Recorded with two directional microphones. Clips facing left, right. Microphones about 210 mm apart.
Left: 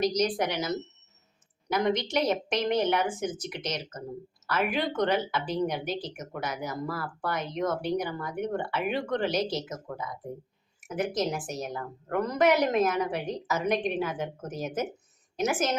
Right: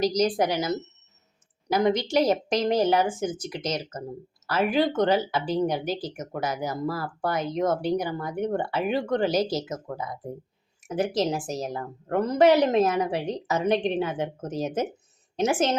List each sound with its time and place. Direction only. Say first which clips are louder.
0.0 s speech: right 3 dB; 30° right (ahead or behind)
1.7 s a woman's voice: right 4 dB; 35° right (ahead or behind)